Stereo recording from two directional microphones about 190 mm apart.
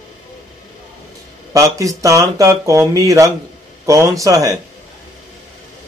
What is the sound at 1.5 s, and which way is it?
Speech, 15° right (ahead or behind).